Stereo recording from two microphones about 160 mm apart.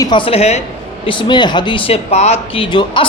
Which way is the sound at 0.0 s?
30° left (ahead or behind).